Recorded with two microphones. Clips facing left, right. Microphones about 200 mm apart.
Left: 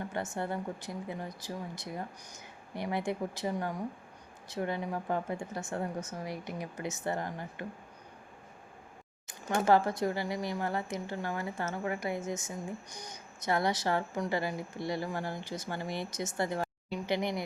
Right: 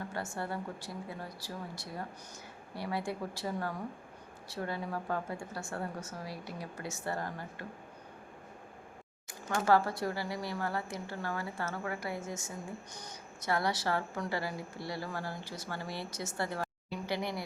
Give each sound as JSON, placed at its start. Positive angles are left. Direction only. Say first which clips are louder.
{"t": 0.1, "sound": "a woman's voice", "louder": "left 3 dB", "side_deg": 20}
{"t": 9.6, "sound": "a woman's voice", "louder": "left 2 dB", "side_deg": 20}